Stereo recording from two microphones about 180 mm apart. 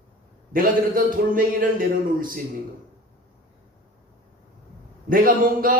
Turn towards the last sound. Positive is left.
turn(degrees=-50)  # may be behind; listen again after turning